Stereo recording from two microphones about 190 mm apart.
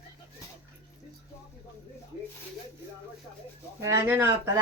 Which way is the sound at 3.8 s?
10° right (ahead or behind).